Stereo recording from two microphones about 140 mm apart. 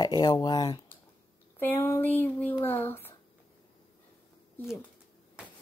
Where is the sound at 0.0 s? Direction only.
30° left (ahead or behind).